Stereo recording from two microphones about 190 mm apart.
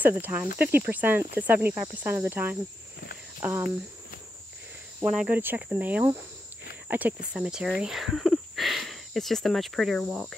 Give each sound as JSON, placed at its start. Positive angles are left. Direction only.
{"t": 0.0, "sound": "cricket", "side_deg": -10}
{"t": 0.6, "sound": "cricket", "side_deg": -55}
{"t": 0.8, "sound": "cricket", "side_deg": -10}
{"t": 5.1, "sound": "cricket", "side_deg": -5}
{"t": 6.9, "sound": "speech", "side_deg": -10}